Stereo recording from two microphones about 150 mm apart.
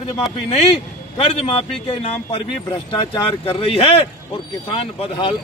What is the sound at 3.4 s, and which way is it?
A man's voice, 40° left (ahead or behind).